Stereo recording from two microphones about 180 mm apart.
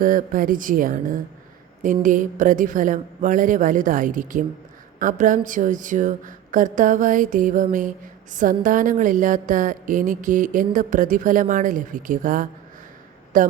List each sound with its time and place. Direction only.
0.0 s speech: 50° right (ahead or behind)